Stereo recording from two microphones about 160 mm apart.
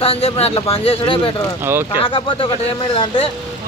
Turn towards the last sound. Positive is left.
turn(degrees=35)  # may be behind; listen again after turning